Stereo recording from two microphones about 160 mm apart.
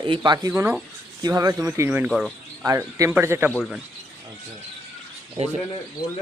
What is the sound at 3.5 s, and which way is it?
Speech, centre (ahead or behind).